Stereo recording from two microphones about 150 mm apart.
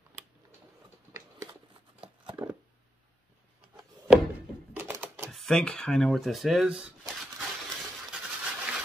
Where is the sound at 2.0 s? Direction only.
35° right (ahead or behind).